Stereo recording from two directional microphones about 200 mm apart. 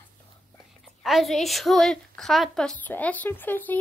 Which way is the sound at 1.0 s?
Centre (ahead or behind).